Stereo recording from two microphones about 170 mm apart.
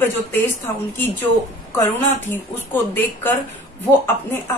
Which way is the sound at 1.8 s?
15° left (ahead or behind).